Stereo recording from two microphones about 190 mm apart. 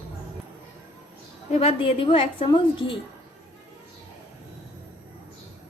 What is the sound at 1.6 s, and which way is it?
A woman's voice, 30° left (ahead or behind).